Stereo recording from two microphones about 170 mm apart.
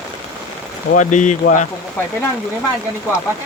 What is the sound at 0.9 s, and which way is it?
Speech, 45° left (ahead or behind).